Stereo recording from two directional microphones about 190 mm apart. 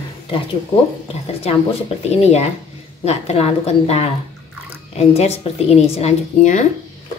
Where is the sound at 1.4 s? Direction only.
30° left (ahead or behind).